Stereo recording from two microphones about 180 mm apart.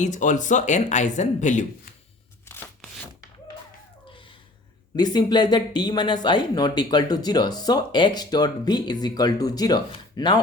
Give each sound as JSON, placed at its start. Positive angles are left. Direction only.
{"t": 0.0, "sound": "speech", "side_deg": 45}
{"t": 4.9, "sound": "speech", "side_deg": 25}